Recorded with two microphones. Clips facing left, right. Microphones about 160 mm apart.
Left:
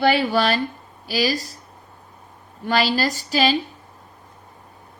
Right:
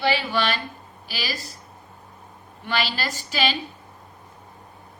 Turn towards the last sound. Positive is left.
turn(degrees=40)  # may be behind; listen again after turning